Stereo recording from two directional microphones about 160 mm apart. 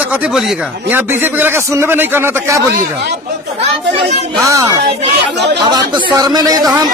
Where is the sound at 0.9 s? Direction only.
15° right (ahead or behind).